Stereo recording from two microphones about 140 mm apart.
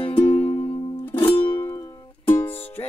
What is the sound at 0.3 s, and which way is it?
Music, 10° left (ahead or behind).